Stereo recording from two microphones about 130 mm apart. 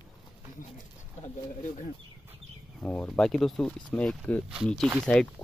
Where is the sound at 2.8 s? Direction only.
10° left (ahead or behind).